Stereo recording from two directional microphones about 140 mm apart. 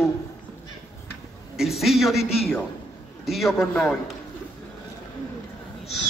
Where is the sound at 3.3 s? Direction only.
Centre (ahead or behind).